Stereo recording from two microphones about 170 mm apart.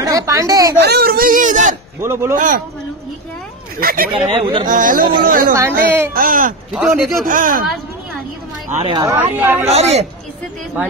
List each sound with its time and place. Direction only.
0.0 s speech: 20° right (ahead or behind)
0.7 s speech: 70° right (ahead or behind); by 1.8 s 45° right (ahead or behind)
2.0 s speech: 15° right (ahead or behind)
2.3 s speech: 50° right (ahead or behind)
3.8 s speech: 55° right (ahead or behind)
4.3 s speech: 30° right (ahead or behind)
4.6 s speech: 50° right (ahead or behind)
5.6 s speech: 15° right (ahead or behind)
6.1 s speech: 55° right (ahead or behind)
6.7 s a man's voice: 5° right (ahead or behind)
7.2 s speech: 55° right (ahead or behind)
9.0 s speech: 15° right (ahead or behind)
9.7 s speech: 40° right (ahead or behind)